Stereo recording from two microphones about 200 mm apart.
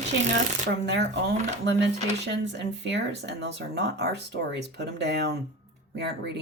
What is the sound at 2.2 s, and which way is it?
Speech, 60° right (ahead or behind).